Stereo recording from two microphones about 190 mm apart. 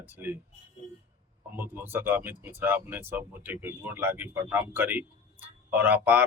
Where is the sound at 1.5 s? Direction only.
10° right (ahead or behind).